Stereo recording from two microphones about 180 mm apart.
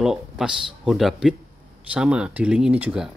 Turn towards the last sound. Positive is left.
turn(degrees=-5)  # may be behind; listen again after turning